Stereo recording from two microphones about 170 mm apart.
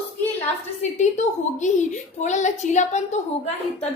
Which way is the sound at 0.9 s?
45° left (ahead or behind).